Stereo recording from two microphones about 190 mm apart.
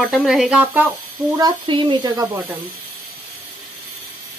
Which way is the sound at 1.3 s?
25° right (ahead or behind).